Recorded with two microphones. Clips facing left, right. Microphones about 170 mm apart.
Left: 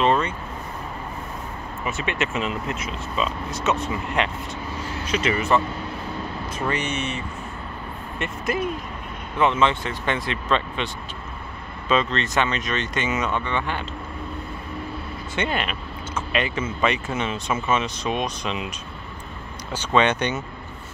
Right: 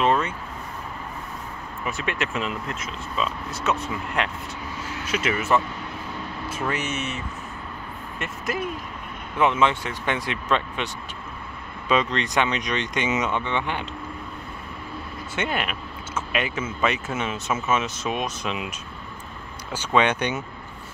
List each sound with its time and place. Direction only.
0.0 s vehicle: 5° right (ahead or behind)
1.9 s speech: centre (ahead or behind)
6.7 s speech: 5° right (ahead or behind)
11.9 s speech: 15° right (ahead or behind)
15.3 s speech: 5° right (ahead or behind)
19.7 s speech: 10° right (ahead or behind)